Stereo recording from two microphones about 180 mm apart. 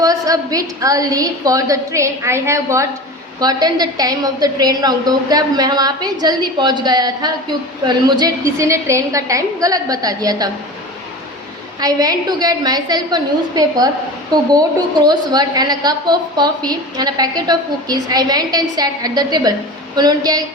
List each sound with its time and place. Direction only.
0.0 s a woman's voice: 20° right (ahead or behind)
11.8 s a woman's voice: 20° right (ahead or behind)
15.0 s a woman's voice: 25° right (ahead or behind)